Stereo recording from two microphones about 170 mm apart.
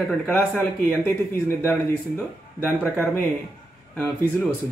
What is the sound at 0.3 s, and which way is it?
Speech, 10° left (ahead or behind).